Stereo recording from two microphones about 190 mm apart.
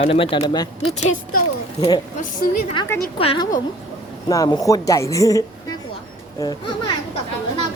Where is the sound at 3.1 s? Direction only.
30° left (ahead or behind).